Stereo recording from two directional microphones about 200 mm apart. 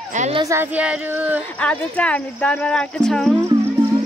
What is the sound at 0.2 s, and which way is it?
Speech, 25° right (ahead or behind).